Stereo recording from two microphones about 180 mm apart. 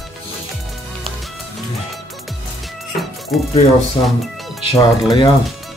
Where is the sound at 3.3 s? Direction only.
Centre (ahead or behind).